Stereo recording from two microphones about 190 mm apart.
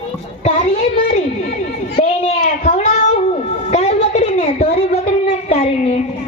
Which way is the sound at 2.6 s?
35° left (ahead or behind).